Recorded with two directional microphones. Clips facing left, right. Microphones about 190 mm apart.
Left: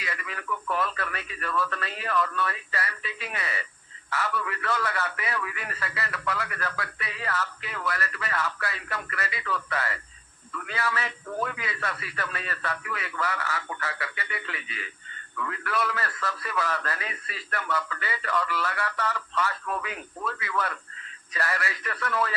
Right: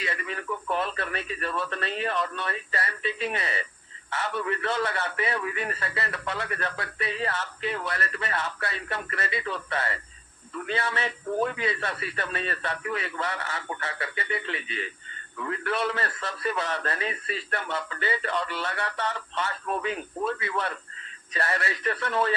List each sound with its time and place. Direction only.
0.0 s a man's voice: 30° right (ahead or behind)